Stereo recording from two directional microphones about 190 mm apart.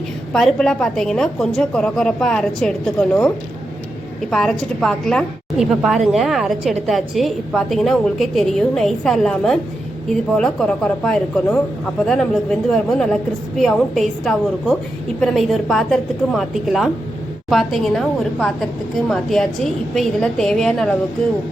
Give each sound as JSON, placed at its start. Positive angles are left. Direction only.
{"t": 0.3, "sound": "a woman's voice", "side_deg": 5}